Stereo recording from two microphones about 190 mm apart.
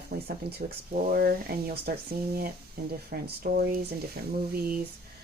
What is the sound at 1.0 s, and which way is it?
Speech, 50° right (ahead or behind).